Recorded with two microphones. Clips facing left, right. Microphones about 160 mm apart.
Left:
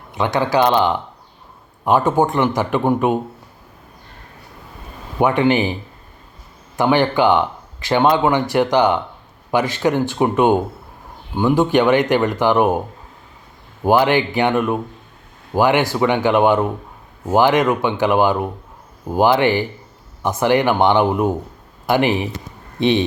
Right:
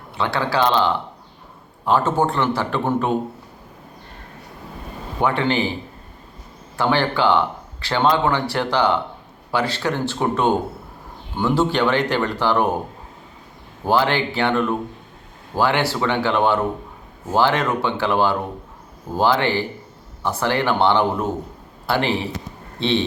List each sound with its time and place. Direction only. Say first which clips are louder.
0.1 s speech: left 4 dB; 15° left (ahead or behind)
5.2 s speech: left 5 dB; 15° left (ahead or behind)
6.7 s speech: left 4 dB; 15° left (ahead or behind)
13.8 s speech: left 4 dB; 15° left (ahead or behind)